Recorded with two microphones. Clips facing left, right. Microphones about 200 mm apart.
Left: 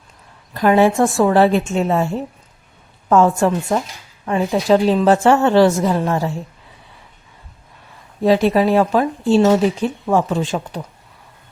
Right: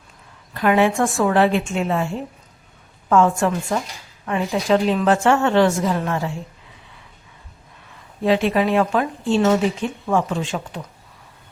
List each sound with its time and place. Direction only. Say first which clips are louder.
0.5 s speech: left 4 dB; 40° left (ahead or behind)
8.2 s speech: left 4 dB; 40° left (ahead or behind)